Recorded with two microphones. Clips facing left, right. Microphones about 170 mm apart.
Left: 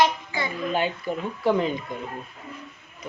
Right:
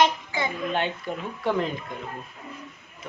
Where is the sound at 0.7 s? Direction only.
5° left (ahead or behind).